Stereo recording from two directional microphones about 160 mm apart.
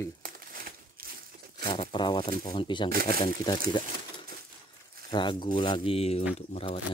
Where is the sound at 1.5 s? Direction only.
30° left (ahead or behind).